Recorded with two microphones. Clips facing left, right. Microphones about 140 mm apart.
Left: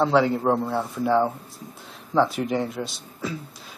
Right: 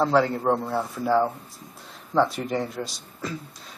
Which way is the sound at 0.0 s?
Centre (ahead or behind).